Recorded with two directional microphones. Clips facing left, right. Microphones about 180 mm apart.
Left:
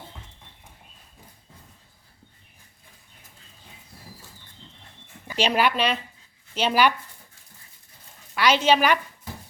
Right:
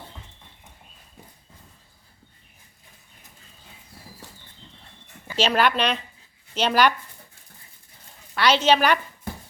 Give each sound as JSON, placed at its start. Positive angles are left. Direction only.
{"t": 5.3, "sound": "speech", "side_deg": 15}
{"t": 8.4, "sound": "speech", "side_deg": 10}
{"t": 9.3, "sound": "dog", "side_deg": -60}